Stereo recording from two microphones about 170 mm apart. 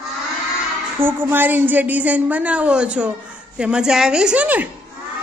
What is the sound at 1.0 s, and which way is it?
A woman's voice, 10° right (ahead or behind).